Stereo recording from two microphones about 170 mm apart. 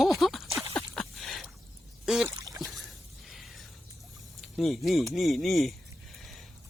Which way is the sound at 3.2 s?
Centre (ahead or behind).